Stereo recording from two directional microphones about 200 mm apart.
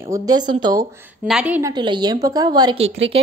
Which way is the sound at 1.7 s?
20° right (ahead or behind).